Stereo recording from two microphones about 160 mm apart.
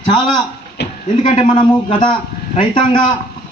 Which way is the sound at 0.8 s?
90° left.